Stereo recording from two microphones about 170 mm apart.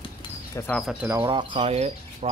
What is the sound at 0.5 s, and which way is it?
Speech, 15° left (ahead or behind).